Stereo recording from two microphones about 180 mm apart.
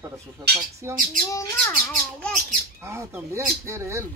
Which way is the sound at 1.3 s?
15° left (ahead or behind).